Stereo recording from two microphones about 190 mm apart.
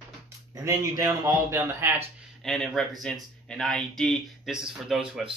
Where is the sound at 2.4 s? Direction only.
5° left (ahead or behind).